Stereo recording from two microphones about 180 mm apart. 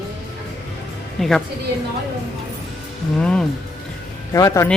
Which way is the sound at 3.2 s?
5° left (ahead or behind).